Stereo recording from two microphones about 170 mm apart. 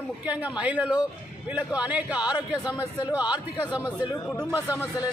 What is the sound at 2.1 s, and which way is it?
Speech, 25° left (ahead or behind).